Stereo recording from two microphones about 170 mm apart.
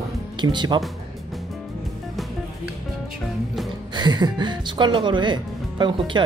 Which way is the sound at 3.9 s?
25° right (ahead or behind).